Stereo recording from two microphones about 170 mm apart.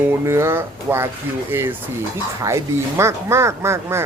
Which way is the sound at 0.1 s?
15° right (ahead or behind).